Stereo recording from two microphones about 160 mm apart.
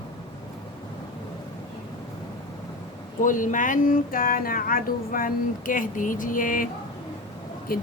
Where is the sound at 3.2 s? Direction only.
55° left (ahead or behind).